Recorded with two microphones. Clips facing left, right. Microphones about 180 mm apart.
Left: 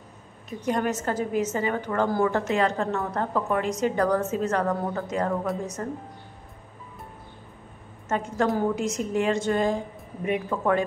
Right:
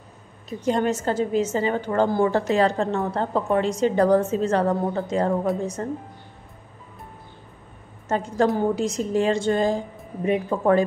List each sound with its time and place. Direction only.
0.5 s a woman's voice: 30° right (ahead or behind)
8.1 s a woman's voice: 35° right (ahead or behind)